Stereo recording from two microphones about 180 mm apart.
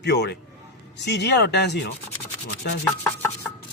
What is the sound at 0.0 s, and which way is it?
Rub, 70° left (ahead or behind).